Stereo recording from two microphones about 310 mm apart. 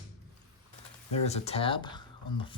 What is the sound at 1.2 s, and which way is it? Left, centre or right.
Speech, left.